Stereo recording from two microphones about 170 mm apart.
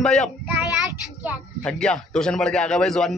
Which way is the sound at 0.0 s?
5° left (ahead or behind).